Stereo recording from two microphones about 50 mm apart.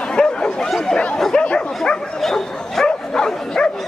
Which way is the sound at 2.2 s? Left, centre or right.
Centre.